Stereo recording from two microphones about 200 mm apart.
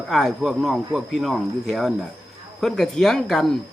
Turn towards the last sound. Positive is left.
turn(degrees=0)  # may be behind; listen again after turning